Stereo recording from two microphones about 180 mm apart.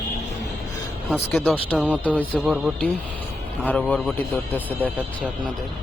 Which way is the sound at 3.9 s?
5° left (ahead or behind).